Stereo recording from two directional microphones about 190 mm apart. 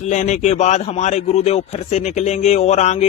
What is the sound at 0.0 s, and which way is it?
A man's voice, 40° left (ahead or behind).